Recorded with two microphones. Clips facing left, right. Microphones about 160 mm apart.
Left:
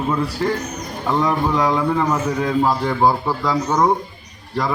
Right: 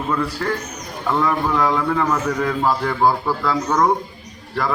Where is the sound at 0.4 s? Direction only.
20° left (ahead or behind).